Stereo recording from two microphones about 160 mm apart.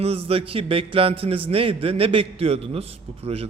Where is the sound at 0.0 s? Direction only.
35° right (ahead or behind).